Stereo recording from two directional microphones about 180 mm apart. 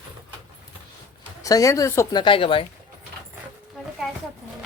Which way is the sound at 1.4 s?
20° left (ahead or behind).